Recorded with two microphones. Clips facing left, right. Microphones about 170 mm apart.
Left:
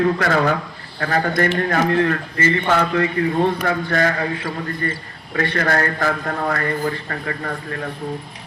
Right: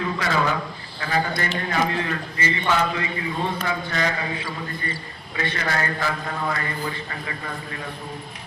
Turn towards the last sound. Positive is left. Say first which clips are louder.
# left 6 dB
turn(degrees=50)  # may be behind; listen again after turning